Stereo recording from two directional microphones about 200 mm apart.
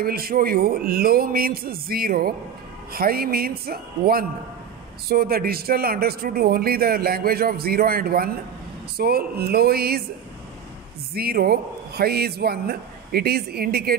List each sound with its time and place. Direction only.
0.0 s speech: 45° right (ahead or behind)
11.1 s speech: 50° right (ahead or behind)